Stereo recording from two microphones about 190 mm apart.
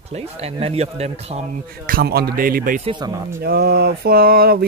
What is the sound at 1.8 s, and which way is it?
Speech, 50° right (ahead or behind).